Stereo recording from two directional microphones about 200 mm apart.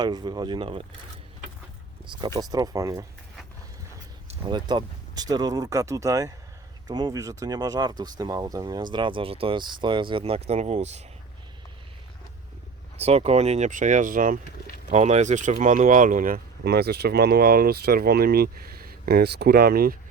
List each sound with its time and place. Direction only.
0.0 s speech: 20° right (ahead or behind)
2.2 s speech: 20° right (ahead or behind)
4.3 s speech: 25° right (ahead or behind)
13.0 s speech: 30° right (ahead or behind); by 20.0 s 50° right (ahead or behind)